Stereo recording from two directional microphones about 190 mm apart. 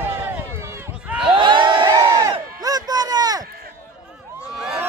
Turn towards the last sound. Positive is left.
turn(degrees=-5)  # may be behind; listen again after turning